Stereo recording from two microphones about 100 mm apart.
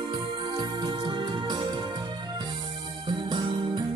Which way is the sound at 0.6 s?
55° right (ahead or behind).